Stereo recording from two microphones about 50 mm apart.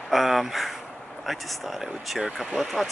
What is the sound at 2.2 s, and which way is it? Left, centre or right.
Speech, right.